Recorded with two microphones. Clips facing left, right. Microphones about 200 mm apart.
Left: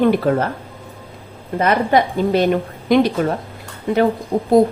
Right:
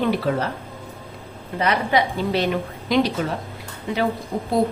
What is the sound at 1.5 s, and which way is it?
A woman's voice, 50° left (ahead or behind).